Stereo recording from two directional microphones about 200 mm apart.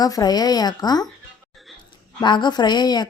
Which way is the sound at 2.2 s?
20° left (ahead or behind).